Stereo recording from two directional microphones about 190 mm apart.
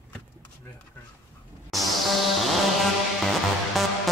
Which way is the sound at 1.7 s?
Centre (ahead or behind).